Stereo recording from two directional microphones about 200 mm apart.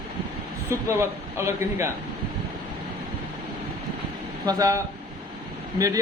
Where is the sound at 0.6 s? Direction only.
15° right (ahead or behind).